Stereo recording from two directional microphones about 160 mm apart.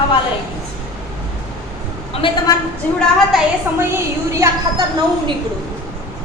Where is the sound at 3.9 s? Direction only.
20° right (ahead or behind).